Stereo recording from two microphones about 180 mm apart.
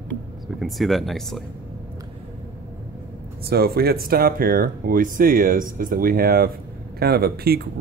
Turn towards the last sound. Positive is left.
turn(degrees=-60)  # may be behind; listen again after turning